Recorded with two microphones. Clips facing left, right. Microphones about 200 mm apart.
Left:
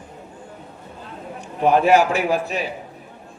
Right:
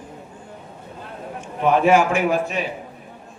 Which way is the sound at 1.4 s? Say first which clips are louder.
Left 1 dB; 40° left (ahead or behind).